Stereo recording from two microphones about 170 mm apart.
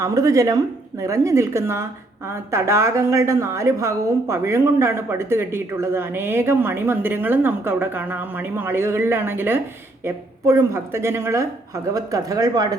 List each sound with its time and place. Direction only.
0.0 s a woman's voice: 20° right (ahead or behind)